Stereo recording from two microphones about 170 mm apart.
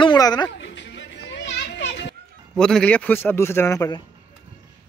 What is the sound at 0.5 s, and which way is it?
Children playing, 90° left.